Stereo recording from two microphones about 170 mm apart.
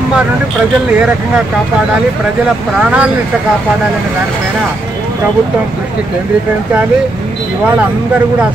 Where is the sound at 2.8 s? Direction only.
5° right (ahead or behind).